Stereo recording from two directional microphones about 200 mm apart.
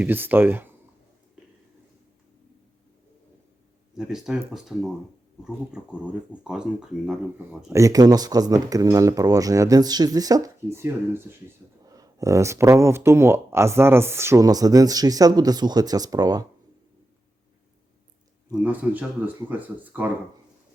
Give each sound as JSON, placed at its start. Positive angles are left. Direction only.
{"t": 0.0, "sound": "speech", "side_deg": -10}
{"t": 3.9, "sound": "speech", "side_deg": 0}
{"t": 18.6, "sound": "speech", "side_deg": -10}